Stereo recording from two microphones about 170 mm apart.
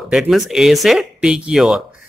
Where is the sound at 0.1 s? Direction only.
5° right (ahead or behind).